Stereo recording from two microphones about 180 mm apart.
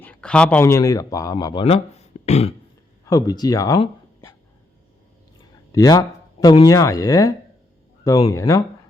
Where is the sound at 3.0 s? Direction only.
20° left (ahead or behind).